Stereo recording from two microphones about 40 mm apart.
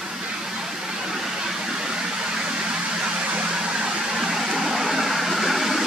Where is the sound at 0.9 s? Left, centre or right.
Centre.